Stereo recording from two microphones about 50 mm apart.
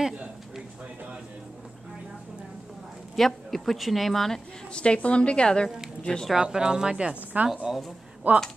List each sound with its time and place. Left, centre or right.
3.2 s a woman's voice: centre
4.7 s a woman's voice: left
6.0 s speech: centre
6.3 s speech: centre
8.3 s speech: right